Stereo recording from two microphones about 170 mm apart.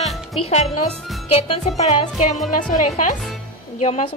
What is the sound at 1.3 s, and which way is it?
A woman's voice, 35° left (ahead or behind).